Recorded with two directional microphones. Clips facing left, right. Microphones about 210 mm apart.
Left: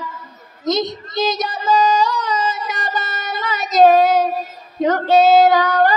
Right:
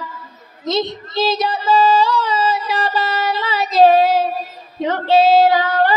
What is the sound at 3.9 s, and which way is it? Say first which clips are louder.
Child singing: even; 45° left (ahead or behind).